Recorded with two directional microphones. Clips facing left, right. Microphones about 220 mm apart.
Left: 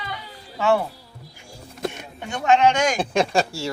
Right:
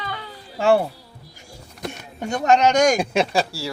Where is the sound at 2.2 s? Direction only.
40° right (ahead or behind).